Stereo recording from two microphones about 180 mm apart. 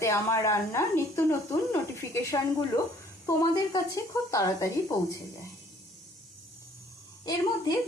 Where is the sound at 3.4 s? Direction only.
20° left (ahead or behind).